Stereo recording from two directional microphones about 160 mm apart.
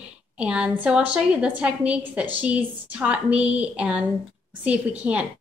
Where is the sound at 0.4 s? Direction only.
5° right (ahead or behind).